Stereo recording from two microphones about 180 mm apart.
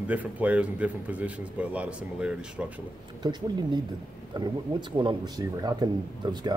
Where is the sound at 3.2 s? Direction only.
25° right (ahead or behind).